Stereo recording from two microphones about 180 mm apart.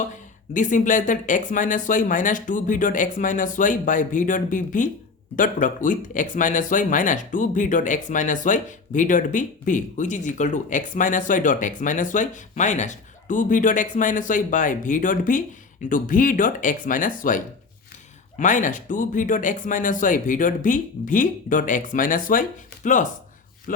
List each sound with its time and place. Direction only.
0.5 s speech: 45° left (ahead or behind)